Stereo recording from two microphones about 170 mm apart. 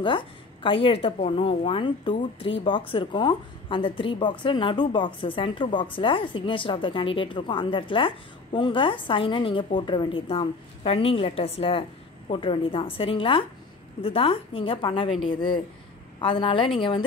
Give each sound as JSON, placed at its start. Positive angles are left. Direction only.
{"t": 0.0, "sound": "a woman's voice", "side_deg": 30}